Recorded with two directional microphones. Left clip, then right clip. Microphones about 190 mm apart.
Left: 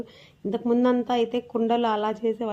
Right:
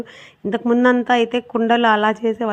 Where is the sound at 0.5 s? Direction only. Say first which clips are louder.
Right 7 dB; 10° right (ahead or behind).